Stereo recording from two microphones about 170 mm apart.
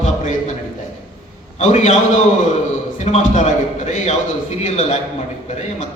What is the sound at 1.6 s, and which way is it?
Speech, 40° left (ahead or behind).